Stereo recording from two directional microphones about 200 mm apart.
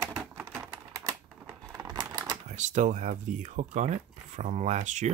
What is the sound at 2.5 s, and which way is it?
Speech, 35° right (ahead or behind).